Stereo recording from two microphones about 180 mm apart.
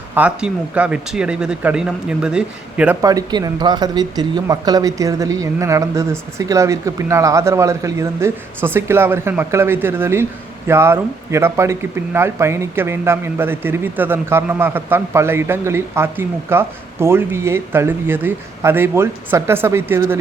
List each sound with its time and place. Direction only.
0.1 s speech: 5° right (ahead or behind)
3.0 s speech: 20° right (ahead or behind)